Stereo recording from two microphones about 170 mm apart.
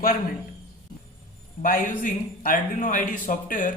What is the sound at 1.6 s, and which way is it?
A man's voice, 55° left (ahead or behind).